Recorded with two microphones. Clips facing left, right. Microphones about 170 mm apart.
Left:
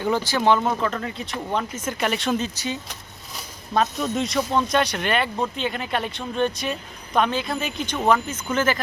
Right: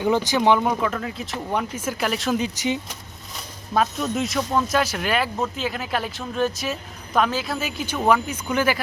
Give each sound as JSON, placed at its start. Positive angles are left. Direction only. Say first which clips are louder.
{"t": 0.0, "sound": "speech", "louder": "right 2 dB", "side_deg": -15}
{"t": 2.4, "sound": "speech", "louder": "right 4 dB", "side_deg": -15}
{"t": 3.8, "sound": "speech", "louder": "even", "side_deg": 0}